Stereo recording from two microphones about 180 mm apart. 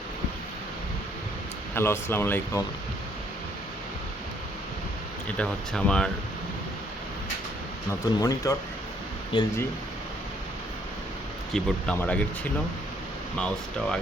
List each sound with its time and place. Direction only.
1.7 s speech: 15° left (ahead or behind)
5.4 s speech: 5° left (ahead or behind)
7.9 s speech: 20° left (ahead or behind)
11.5 s speech: 5° left (ahead or behind)
13.4 s speech: 5° left (ahead or behind)